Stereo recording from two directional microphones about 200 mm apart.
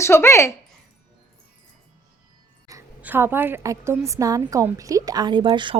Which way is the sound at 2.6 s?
10° right (ahead or behind).